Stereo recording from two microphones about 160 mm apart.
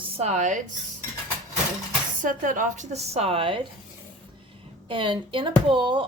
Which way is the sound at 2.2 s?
55° right (ahead or behind).